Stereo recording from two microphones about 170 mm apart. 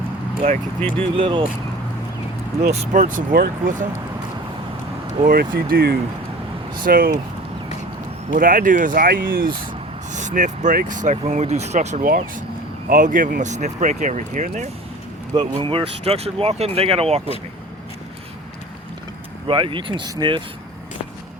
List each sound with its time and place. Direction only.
0.9 s speech: 30° right (ahead or behind)
2.7 s speech: 45° right (ahead or behind); by 3.8 s 60° right (ahead or behind)
5.2 s speech: 55° right (ahead or behind)
8.4 s speech: 55° right (ahead or behind)
10.1 s speech: 45° right (ahead or behind)
15.3 s speech: 30° right (ahead or behind)
19.5 s speech: 30° right (ahead or behind)